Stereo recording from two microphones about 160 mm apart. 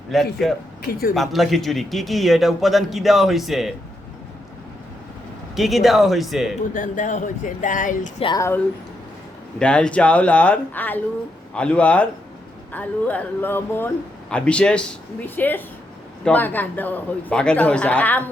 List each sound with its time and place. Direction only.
0.1 s a man's voice: centre (ahead or behind)
0.8 s a man's voice: 75° left (ahead or behind)
1.1 s a man's voice: centre (ahead or behind)
5.5 s a man's voice: centre (ahead or behind)
6.7 s speech: 55° left (ahead or behind)
8.4 s speech: 15° left (ahead or behind)